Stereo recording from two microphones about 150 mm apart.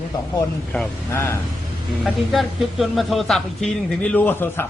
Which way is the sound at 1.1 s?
20° left (ahead or behind).